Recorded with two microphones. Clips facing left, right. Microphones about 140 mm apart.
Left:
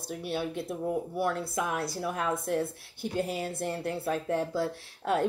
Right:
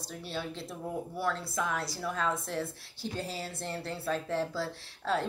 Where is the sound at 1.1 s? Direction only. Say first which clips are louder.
Left 3 dB; 55° left (ahead or behind).